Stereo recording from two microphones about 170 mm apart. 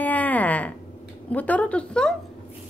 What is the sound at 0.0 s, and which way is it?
Wail, 10° left (ahead or behind).